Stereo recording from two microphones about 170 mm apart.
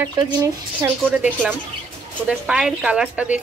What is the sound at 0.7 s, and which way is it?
A woman's voice, 10° right (ahead or behind).